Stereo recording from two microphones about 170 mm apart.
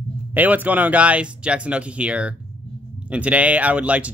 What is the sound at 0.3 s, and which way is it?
Speech, 10° right (ahead or behind).